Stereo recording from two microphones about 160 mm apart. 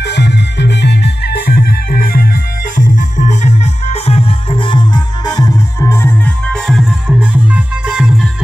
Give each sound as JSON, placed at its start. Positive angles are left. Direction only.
{"t": 0.0, "sound": "music", "side_deg": 90}